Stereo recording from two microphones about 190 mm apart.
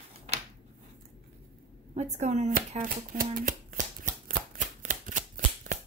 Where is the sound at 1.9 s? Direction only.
35° right (ahead or behind).